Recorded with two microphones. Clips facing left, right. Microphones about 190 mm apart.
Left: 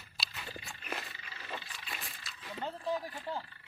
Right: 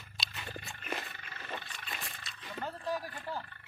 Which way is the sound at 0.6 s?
Centre (ahead or behind).